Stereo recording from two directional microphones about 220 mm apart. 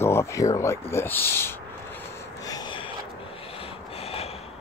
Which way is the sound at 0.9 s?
10° left (ahead or behind).